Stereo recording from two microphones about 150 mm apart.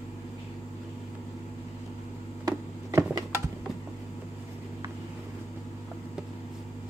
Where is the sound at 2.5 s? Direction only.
20° right (ahead or behind).